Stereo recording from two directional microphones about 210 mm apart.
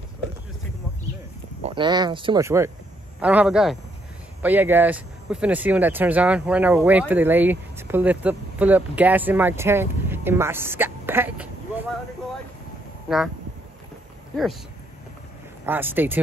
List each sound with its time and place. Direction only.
1.6 s a man's voice: 25° right (ahead or behind); by 11.9 s 10° right (ahead or behind)
14.3 s speech: centre (ahead or behind)
15.6 s speech: 10° right (ahead or behind)